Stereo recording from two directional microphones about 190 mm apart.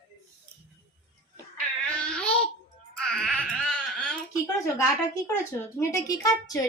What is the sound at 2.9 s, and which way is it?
Baby cry, 5° left (ahead or behind).